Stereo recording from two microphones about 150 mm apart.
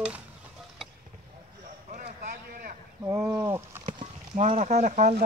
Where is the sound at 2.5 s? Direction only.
75° right (ahead or behind).